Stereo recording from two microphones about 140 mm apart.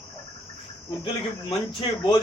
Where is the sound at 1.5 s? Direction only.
35° left (ahead or behind).